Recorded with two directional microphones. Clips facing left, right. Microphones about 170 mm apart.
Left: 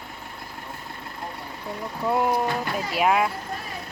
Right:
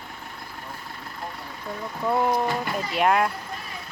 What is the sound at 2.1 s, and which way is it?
Speech, 5° left (ahead or behind).